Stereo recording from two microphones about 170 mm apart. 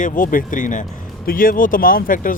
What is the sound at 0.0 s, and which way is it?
Speech, 55° left (ahead or behind).